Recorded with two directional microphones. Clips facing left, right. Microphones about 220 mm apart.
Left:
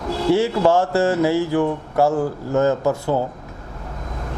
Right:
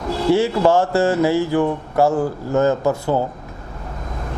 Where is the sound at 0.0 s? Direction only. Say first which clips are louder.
Right 1 dB; 35° right (ahead or behind).